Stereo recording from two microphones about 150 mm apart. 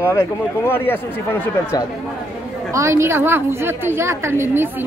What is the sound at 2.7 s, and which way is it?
A woman's voice, 20° right (ahead or behind).